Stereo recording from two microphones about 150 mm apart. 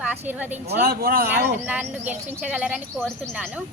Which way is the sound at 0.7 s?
80° right.